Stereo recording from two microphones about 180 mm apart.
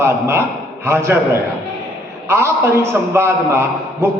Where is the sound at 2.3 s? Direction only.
15° right (ahead or behind).